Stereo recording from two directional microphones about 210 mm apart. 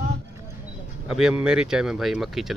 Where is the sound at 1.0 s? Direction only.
Centre (ahead or behind).